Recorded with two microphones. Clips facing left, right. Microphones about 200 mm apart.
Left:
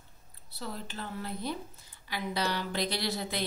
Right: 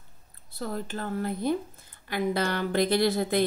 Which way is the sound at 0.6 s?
50° right (ahead or behind).